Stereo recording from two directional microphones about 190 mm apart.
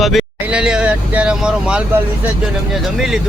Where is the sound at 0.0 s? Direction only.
Centre (ahead or behind).